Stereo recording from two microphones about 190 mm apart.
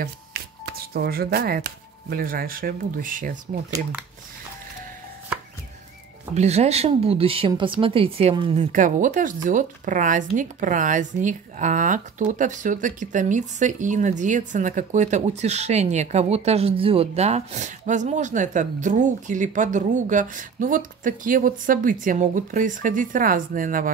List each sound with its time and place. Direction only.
0.0 s speech: 55° right (ahead or behind)
6.3 s speech: 35° right (ahead or behind)
8.7 s speech: 45° right (ahead or behind)